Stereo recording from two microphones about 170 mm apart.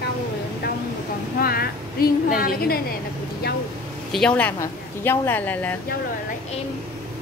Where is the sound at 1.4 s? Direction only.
60° left (ahead or behind).